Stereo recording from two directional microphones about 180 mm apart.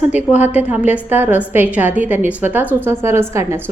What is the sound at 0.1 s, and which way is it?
A woman's voice, 10° right (ahead or behind).